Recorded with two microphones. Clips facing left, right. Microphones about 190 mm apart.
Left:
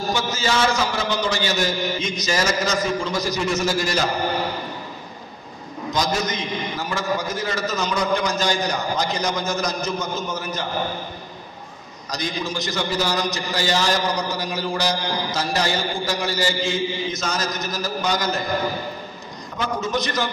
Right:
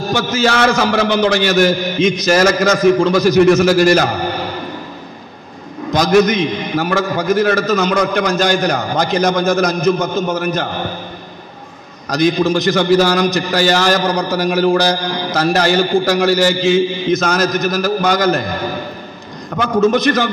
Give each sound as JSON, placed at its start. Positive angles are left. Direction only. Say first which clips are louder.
{"t": 0.1, "sound": "a man's voice", "louder": "right 8 dB", "side_deg": -70}
{"t": 5.9, "sound": "a man's voice", "louder": "right 12 dB", "side_deg": -90}
{"t": 6.3, "sound": "a man's voice", "louder": "right 10 dB", "side_deg": -75}
{"t": 12.1, "sound": "a man's voice", "louder": "right 13 dB", "side_deg": -75}
{"t": 14.3, "sound": "a man's voice", "louder": "right 12 dB", "side_deg": -90}
{"t": 19.5, "sound": "a man's voice", "louder": "right 11 dB", "side_deg": -70}